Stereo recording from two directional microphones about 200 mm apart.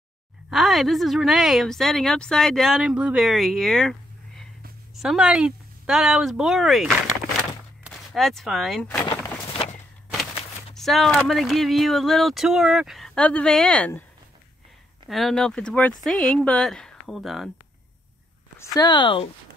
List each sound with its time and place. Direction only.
0.5 s a woman's voice: centre (ahead or behind)
4.9 s speech: 5° right (ahead or behind)
9.5 s walk: 25° left (ahead or behind)
10.7 s a woman's voice: centre (ahead or behind)
15.0 s a woman's voice: centre (ahead or behind)
18.6 s speech: 20° left (ahead or behind)